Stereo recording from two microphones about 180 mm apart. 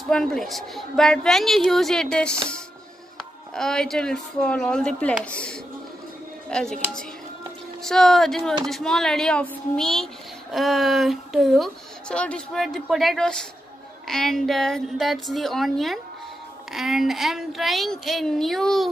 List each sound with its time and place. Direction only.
0.0 s a woman's voice: centre (ahead or behind)